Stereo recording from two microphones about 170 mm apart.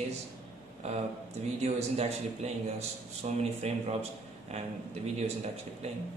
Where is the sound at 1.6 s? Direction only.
40° right (ahead or behind).